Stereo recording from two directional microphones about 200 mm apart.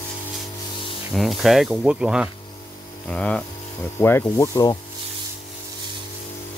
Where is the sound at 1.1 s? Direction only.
Centre (ahead or behind); by 4.7 s 15° left (ahead or behind).